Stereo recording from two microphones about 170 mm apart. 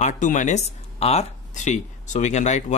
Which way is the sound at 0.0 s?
50° left (ahead or behind).